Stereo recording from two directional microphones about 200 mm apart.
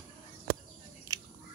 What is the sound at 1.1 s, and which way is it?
Biting, 20° right (ahead or behind).